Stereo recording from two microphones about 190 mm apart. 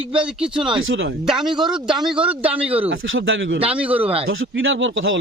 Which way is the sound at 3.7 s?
5° right (ahead or behind).